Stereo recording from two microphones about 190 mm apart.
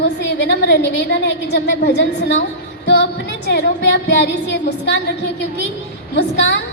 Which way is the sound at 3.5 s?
65° left (ahead or behind).